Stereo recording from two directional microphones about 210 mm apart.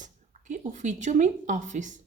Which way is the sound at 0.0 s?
35° right (ahead or behind).